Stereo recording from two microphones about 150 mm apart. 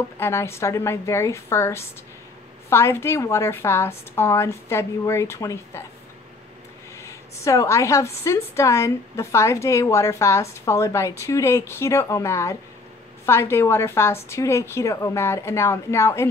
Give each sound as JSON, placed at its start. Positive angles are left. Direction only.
{"t": 0.2, "sound": "a woman's voice", "side_deg": 20}
{"t": 7.0, "sound": "a woman's voice", "side_deg": 20}